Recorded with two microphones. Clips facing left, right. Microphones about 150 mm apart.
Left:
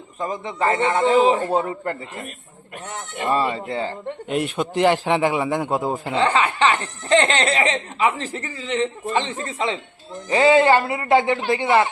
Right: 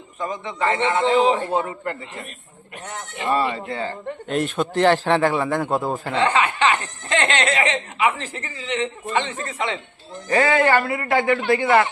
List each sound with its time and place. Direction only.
0.2 s a man's voice: 30° left (ahead or behind)
3.2 s speech: 25° left (ahead or behind)
4.3 s a man's voice: 10° left (ahead or behind)
6.2 s a man's voice: 30° left (ahead or behind)